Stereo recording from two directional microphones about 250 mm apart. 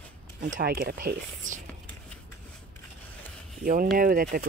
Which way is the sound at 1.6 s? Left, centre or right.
Centre.